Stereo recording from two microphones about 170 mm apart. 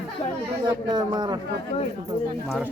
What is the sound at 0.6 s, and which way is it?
Speech, 25° right (ahead or behind).